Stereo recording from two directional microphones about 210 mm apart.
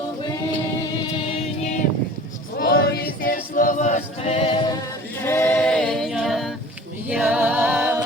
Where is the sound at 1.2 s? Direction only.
25° left (ahead or behind).